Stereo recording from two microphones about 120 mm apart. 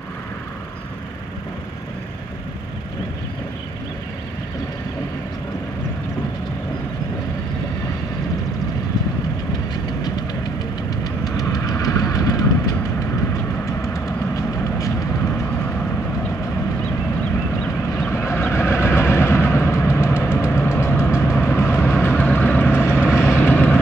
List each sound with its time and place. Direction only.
11.2 s vehicle: 30° left (ahead or behind)
13.9 s vehicle: 30° left (ahead or behind)
18.1 s vehicle: 20° left (ahead or behind)